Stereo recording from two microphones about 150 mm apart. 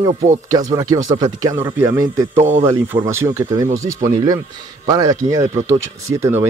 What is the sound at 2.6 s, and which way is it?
Speech, 15° right (ahead or behind).